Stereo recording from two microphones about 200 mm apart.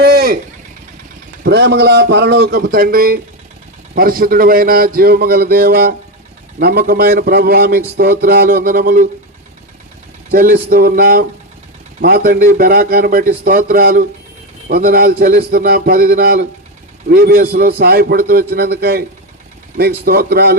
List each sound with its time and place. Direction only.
0.0 s vehicle: 50° right (ahead or behind)
1.5 s a man's voice: 55° right (ahead or behind)
10.3 s a man's voice: 50° right (ahead or behind)
20.1 s a man's voice: 50° right (ahead or behind)